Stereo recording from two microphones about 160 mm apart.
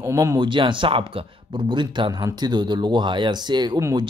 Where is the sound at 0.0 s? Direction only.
20° right (ahead or behind).